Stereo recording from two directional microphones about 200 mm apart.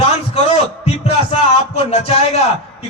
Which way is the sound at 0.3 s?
30° left (ahead or behind).